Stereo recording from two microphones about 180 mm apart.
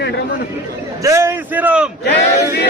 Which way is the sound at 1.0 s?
15° right (ahead or behind).